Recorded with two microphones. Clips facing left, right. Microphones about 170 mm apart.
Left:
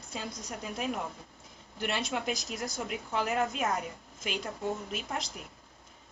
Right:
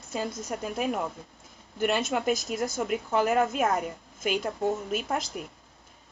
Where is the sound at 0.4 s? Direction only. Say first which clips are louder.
Right 3 dB; 50° right (ahead or behind).